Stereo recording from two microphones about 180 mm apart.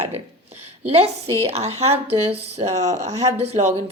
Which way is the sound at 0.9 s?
35° right (ahead or behind).